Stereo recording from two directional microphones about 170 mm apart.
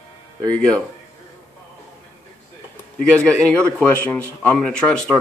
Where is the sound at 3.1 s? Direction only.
5° left (ahead or behind).